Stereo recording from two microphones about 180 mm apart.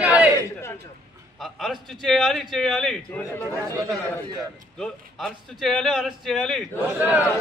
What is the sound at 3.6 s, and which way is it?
Speech, 15° right (ahead or behind).